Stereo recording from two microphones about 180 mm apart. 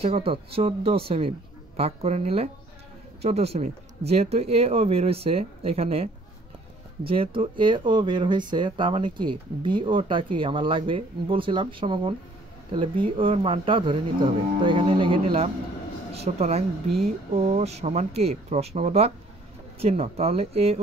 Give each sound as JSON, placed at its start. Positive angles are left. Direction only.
{"t": 0.0, "sound": "speech", "side_deg": -30}